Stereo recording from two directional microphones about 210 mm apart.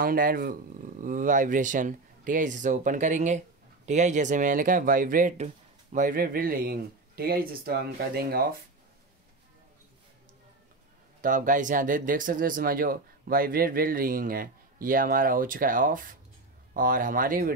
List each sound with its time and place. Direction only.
0.0 s speech: 45° right (ahead or behind)
11.1 s speech: 40° right (ahead or behind)